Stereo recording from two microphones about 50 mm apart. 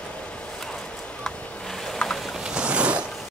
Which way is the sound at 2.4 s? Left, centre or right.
Centre.